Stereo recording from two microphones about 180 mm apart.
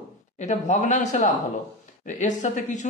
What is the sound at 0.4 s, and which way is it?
Speech, 40° left (ahead or behind).